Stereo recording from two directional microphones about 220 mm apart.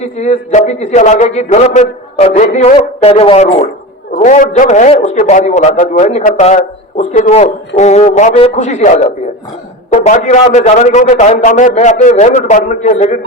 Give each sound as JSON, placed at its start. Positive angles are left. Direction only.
{"t": 0.2, "sound": "a man's voice", "side_deg": 30}